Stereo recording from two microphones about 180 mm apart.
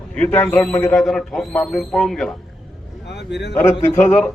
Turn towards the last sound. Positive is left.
turn(degrees=5)  # may be behind; listen again after turning